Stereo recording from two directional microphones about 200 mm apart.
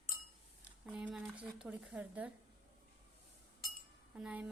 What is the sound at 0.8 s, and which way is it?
Speech, 5° right (ahead or behind).